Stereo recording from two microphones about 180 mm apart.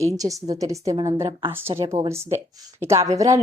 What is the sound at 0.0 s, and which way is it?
A woman's voice, 20° right (ahead or behind).